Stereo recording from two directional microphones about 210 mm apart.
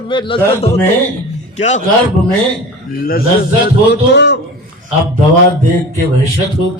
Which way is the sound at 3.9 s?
55° left (ahead or behind).